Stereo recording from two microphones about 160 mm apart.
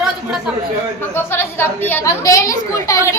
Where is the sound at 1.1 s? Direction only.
15° left (ahead or behind).